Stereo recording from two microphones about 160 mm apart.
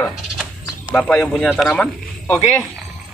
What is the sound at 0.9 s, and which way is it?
Speech, 5° left (ahead or behind).